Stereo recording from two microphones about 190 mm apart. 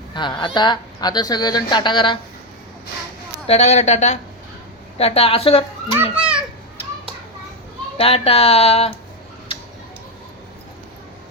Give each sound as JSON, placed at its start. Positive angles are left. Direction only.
{"t": 0.1, "sound": "speech", "side_deg": 25}
{"t": 3.4, "sound": "speech", "side_deg": 35}
{"t": 5.9, "sound": "a child's voice", "side_deg": -5}
{"t": 7.9, "sound": "speech", "side_deg": 30}